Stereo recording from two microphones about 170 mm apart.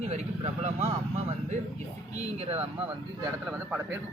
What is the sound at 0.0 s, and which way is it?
Speech, 40° right (ahead or behind).